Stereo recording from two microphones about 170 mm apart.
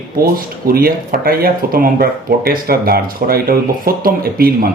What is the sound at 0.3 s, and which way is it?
Speech, 60° right (ahead or behind).